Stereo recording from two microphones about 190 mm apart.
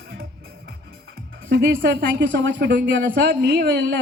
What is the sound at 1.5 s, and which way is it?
Speech, 60° right (ahead or behind).